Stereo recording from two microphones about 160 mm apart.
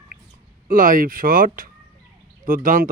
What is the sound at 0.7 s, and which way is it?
Speech, 60° right (ahead or behind).